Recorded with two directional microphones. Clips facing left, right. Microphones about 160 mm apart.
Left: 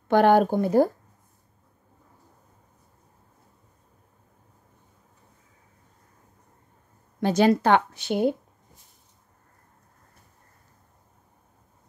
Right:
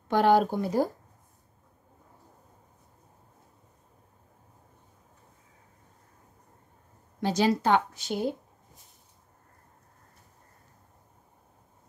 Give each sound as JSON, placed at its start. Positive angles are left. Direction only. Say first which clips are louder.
{"t": 0.1, "sound": "speech", "louder": "left 4 dB", "side_deg": 55}
{"t": 7.2, "sound": "a woman's voice", "louder": "left 5 dB", "side_deg": 55}